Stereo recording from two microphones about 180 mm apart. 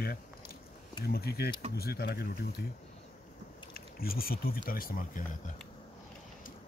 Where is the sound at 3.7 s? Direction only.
55° left (ahead or behind).